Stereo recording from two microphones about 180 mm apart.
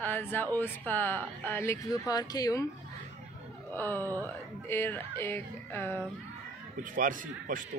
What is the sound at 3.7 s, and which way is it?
Speech, 10° left (ahead or behind).